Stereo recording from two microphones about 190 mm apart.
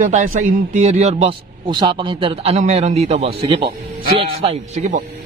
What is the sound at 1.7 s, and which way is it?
A man's voice, 25° right (ahead or behind).